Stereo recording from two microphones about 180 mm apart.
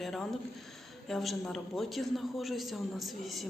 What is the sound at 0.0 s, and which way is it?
A man's voice, centre (ahead or behind).